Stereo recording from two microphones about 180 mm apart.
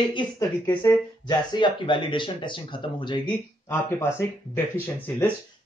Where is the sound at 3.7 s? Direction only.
15° left (ahead or behind).